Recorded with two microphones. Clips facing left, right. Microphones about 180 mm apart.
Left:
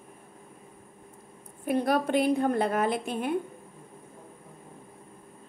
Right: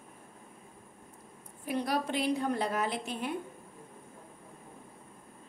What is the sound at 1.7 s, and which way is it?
A woman's voice, 55° left (ahead or behind).